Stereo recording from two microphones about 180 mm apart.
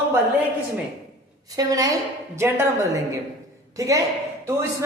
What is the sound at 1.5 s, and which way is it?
A woman's voice, 20° right (ahead or behind).